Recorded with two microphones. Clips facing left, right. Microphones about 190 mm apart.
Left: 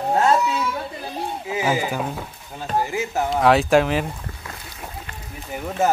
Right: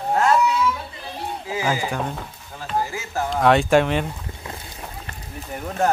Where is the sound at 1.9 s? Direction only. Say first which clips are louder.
Left 1 dB; 5° left (ahead or behind).